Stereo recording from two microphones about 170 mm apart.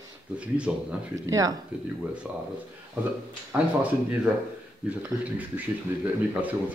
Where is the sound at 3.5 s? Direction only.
10° right (ahead or behind).